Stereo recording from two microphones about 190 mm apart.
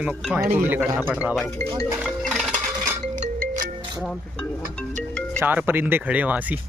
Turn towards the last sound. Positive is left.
turn(degrees=-10)  # may be behind; listen again after turning